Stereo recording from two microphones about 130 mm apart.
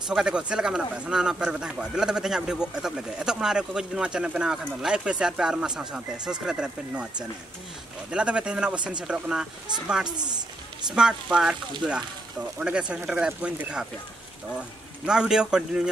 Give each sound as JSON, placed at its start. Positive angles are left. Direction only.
{"t": 0.1, "sound": "speech", "side_deg": -5}
{"t": 8.1, "sound": "speech", "side_deg": -5}
{"t": 10.0, "sound": "a woman's voice", "side_deg": -35}
{"t": 11.0, "sound": "speech", "side_deg": -5}
{"t": 15.0, "sound": "speech", "side_deg": -5}